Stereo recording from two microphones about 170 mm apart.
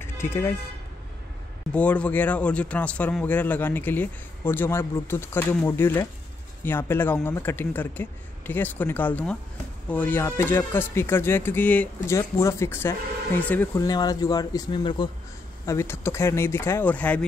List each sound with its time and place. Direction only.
0.0 s speech: 15° left (ahead or behind)
1.7 s speech: 10° left (ahead or behind)
13.8 s speech: 20° left (ahead or behind)
15.6 s speech: 15° left (ahead or behind)